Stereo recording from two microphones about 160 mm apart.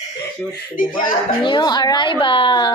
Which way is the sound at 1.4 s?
30° left (ahead or behind).